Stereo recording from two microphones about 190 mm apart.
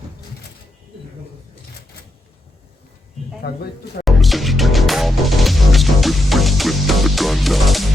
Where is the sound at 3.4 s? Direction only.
60° left (ahead or behind).